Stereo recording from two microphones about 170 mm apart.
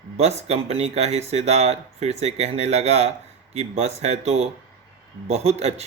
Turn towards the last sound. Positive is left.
turn(degrees=-40)  # may be behind; listen again after turning